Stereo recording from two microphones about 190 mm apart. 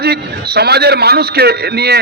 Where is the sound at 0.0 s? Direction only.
55° right (ahead or behind).